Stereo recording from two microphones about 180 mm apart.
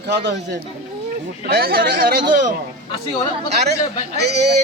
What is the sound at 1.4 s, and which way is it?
Speech, 60° right (ahead or behind).